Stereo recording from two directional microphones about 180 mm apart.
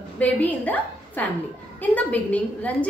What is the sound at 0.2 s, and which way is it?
A woman's voice, 10° left (ahead or behind).